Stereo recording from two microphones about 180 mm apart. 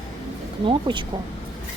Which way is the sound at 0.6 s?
25° right (ahead or behind).